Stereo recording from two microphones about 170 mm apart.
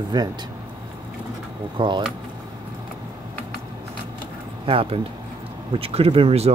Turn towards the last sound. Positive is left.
turn(degrees=-35)  # may be behind; listen again after turning